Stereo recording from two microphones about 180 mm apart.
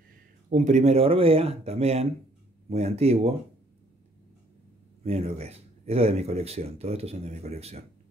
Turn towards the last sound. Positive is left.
turn(degrees=-35)  # may be behind; listen again after turning